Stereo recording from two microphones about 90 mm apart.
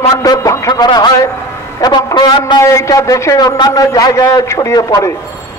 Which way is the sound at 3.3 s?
50° left (ahead or behind).